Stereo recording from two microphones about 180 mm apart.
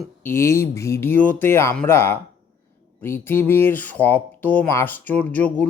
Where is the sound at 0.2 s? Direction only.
15° left (ahead or behind).